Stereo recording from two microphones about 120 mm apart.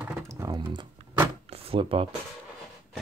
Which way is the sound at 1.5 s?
50° right (ahead or behind).